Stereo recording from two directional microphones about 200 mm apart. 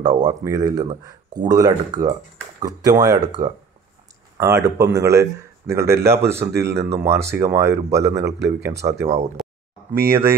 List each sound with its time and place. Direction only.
0.0 s speech: 20° right (ahead or behind)
6.5 s speech: 55° right (ahead or behind)
6.8 s speech: 15° right (ahead or behind)